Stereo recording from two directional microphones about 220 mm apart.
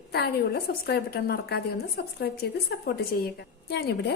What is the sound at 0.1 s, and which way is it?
A woman's voice, 45° left (ahead or behind).